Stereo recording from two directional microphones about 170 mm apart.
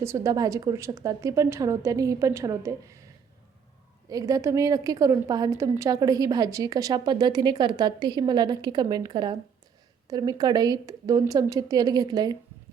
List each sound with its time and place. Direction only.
0.0 s a woman's voice: 15° right (ahead or behind)
4.1 s a woman's voice: 20° right (ahead or behind)